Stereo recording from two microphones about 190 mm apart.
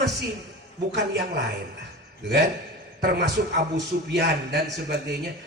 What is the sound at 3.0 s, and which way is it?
Speech, 65° right (ahead or behind).